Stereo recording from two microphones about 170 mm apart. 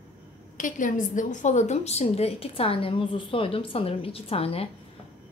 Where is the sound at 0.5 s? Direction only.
50° left (ahead or behind).